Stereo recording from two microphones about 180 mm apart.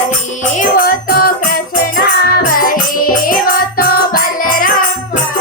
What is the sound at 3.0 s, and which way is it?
Music, 50° left (ahead or behind).